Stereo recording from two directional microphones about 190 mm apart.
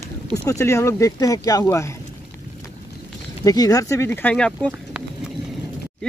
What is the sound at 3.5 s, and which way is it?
Speech, 20° left (ahead or behind).